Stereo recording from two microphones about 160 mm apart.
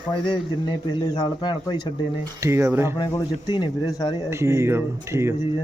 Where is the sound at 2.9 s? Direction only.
25° left (ahead or behind).